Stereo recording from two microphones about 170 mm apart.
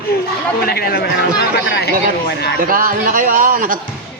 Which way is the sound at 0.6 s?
65° left (ahead or behind).